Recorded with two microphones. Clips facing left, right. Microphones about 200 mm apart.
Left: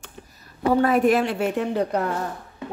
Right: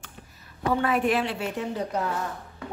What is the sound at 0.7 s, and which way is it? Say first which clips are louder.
A woman's voice: left 6 dB; 40° left (ahead or behind).